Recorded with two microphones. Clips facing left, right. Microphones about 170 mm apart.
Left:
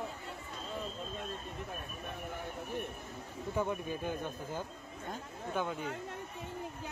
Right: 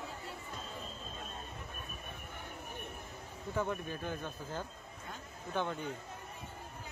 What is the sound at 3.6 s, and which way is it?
Speech, 15° left (ahead or behind).